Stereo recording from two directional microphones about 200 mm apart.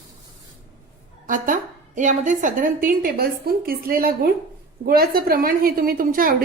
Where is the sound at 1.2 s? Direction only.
40° right (ahead or behind).